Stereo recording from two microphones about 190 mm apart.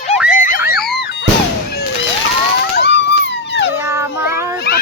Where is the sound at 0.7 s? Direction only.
60° left (ahead or behind).